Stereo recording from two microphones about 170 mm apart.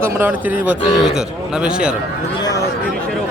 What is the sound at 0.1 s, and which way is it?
Speech, 10° right (ahead or behind).